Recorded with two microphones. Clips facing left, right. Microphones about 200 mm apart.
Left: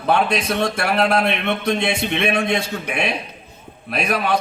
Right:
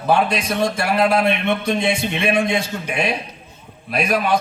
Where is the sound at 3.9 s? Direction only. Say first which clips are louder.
Right 2 dB; 60° left (ahead or behind).